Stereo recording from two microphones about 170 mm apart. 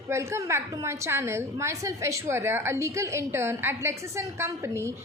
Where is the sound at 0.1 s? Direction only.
15° right (ahead or behind).